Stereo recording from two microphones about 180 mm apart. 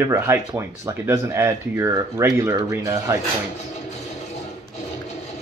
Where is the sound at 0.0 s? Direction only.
15° right (ahead or behind).